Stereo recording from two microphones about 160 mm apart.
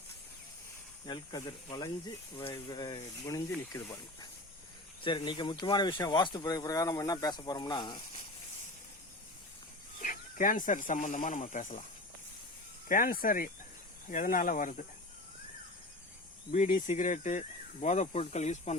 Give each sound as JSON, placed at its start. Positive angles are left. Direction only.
{"t": 1.0, "sound": "speech", "side_deg": 25}
{"t": 3.2, "sound": "speech", "side_deg": 15}
{"t": 5.0, "sound": "speech", "side_deg": 30}
{"t": 10.0, "sound": "speech", "side_deg": 55}
{"t": 12.9, "sound": "speech", "side_deg": 65}
{"t": 16.5, "sound": "speech", "side_deg": 55}